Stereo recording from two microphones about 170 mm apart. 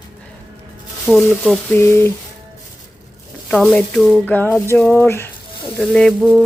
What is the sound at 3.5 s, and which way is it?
Speech, 5° left (ahead or behind).